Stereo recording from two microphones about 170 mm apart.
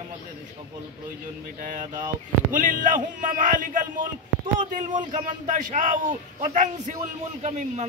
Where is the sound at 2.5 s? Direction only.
50° right (ahead or behind).